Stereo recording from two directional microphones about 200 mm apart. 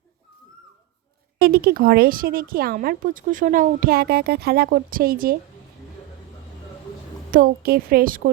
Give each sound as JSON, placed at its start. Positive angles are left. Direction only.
{"t": 1.4, "sound": "speech", "side_deg": -50}
{"t": 7.3, "sound": "speech", "side_deg": -45}